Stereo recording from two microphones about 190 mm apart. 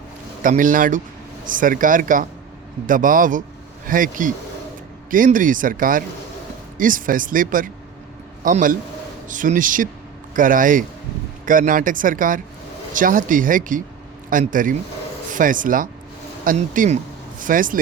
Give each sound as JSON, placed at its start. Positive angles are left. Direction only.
{"t": 0.4, "sound": "speech", "side_deg": -45}